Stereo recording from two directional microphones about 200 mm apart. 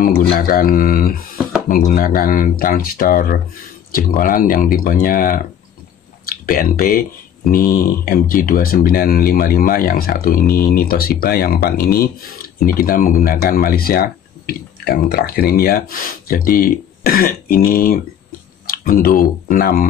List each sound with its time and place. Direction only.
0.0 s speech: 45° left (ahead or behind)